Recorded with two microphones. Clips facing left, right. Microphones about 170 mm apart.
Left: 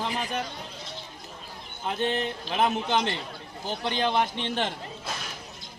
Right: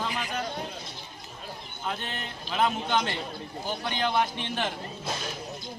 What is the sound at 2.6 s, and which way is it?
Speech, 20° left (ahead or behind).